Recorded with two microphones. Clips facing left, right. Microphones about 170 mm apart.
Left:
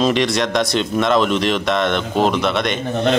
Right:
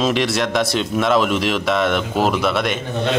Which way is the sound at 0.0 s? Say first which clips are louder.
Left 2 dB; centre (ahead or behind).